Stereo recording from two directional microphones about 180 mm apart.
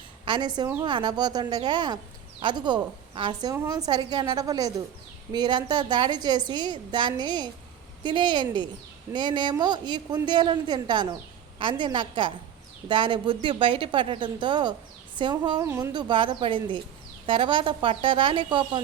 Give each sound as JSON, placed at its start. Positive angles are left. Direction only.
{"t": 0.3, "sound": "speech", "side_deg": -25}